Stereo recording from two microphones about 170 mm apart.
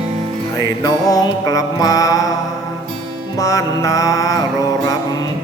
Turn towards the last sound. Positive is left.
turn(degrees=20)  # may be behind; listen again after turning